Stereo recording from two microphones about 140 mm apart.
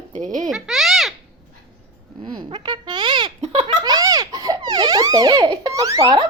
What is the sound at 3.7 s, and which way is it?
Baby laughter, 30° right (ahead or behind).